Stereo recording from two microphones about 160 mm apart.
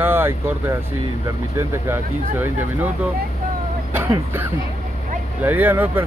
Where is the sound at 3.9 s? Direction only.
15° right (ahead or behind).